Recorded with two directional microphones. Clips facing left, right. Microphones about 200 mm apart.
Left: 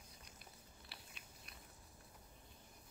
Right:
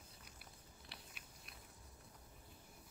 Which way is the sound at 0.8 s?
Centre (ahead or behind).